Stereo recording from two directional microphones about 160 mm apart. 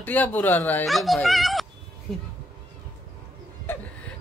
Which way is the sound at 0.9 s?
Centre (ahead or behind).